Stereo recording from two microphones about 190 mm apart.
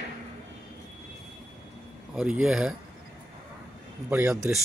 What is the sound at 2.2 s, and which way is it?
Speech, 5° right (ahead or behind).